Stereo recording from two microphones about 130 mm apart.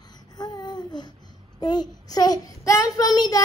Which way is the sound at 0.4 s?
35° left (ahead or behind).